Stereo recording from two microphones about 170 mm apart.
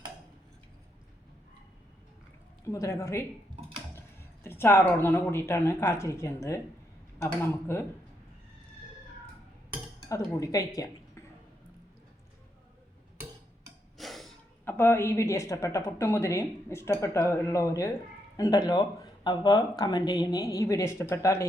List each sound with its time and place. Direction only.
2.7 s a woman's voice: 15° left (ahead or behind)
4.4 s a woman's voice: 15° left (ahead or behind)
10.1 s speech: 20° left (ahead or behind)
14.0 s a sound: centre (ahead or behind)
14.6 s a woman's voice: 10° left (ahead or behind)